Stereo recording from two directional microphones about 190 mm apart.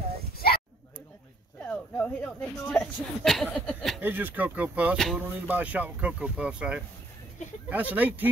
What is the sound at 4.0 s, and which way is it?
Speech, 10° right (ahead or behind).